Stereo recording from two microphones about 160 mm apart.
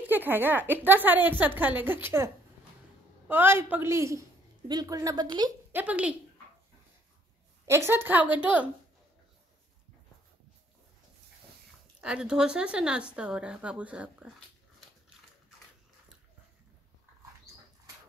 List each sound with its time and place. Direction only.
0.0 s a woman's voice: 10° right (ahead or behind)
5.7 s a woman's voice: 10° right (ahead or behind)
7.6 s a woman's voice: 15° right (ahead or behind)
12.0 s a woman's voice: 5° right (ahead or behind)